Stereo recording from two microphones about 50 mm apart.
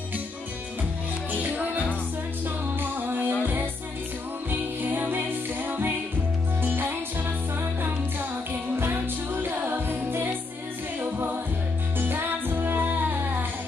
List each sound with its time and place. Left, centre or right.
1.3 s music: right
4.5 s music: right
8.7 s music: right